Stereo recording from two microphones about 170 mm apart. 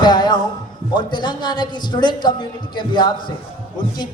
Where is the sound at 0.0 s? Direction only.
25° left (ahead or behind).